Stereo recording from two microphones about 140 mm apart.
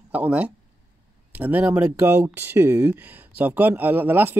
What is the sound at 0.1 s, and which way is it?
Speech, 10° right (ahead or behind).